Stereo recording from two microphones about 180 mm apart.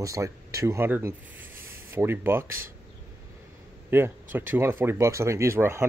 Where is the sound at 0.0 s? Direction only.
20° right (ahead or behind).